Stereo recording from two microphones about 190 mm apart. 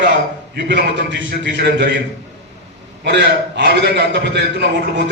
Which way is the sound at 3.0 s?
65° right (ahead or behind).